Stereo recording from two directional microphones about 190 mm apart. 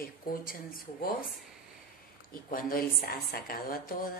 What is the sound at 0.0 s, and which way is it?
A woman's voice, 50° left (ahead or behind).